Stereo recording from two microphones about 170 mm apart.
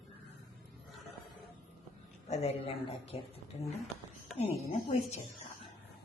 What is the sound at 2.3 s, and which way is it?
Speech, 40° left (ahead or behind).